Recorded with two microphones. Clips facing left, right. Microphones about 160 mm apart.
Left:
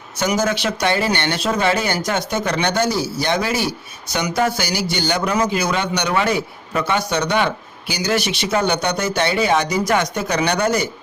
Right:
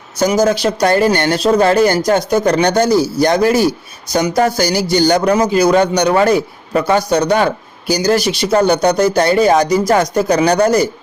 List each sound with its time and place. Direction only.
0.2 s a man's voice: 35° right (ahead or behind)